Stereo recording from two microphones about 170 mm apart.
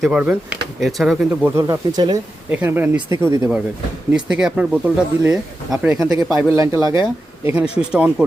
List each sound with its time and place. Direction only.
0.0 s speech: 5° right (ahead or behind)
1.5 s speech: 20° right (ahead or behind)
2.5 s speech: 10° right (ahead or behind)
6.0 s speech: 20° right (ahead or behind)
7.5 s speech: 5° right (ahead or behind)